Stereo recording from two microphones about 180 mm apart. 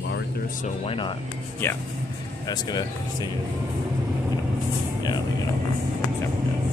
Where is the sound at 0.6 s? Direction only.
30° left (ahead or behind).